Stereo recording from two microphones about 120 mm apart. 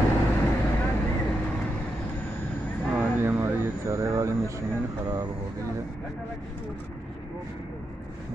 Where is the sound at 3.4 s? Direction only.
25° right (ahead or behind).